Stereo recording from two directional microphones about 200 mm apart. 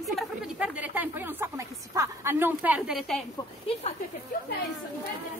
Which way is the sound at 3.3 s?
30° left (ahead or behind).